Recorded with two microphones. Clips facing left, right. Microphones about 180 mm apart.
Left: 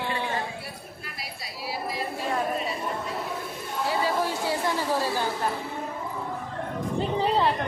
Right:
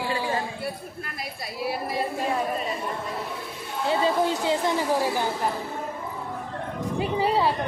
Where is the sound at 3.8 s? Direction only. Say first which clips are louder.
Right 4 dB; 20° right (ahead or behind).